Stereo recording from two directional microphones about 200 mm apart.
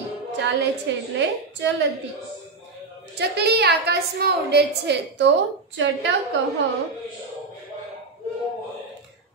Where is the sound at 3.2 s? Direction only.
55° right (ahead or behind).